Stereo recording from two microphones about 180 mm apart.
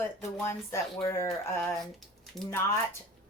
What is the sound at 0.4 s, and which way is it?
Speech, 15° left (ahead or behind).